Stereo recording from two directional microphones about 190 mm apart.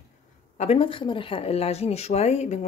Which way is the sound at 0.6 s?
30° left (ahead or behind).